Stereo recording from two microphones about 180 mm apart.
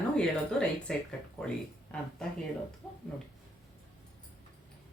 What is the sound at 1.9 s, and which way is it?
Speech, 5° left (ahead or behind).